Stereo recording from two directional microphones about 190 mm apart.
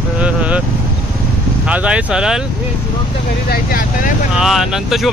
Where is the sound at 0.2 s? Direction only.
5° right (ahead or behind).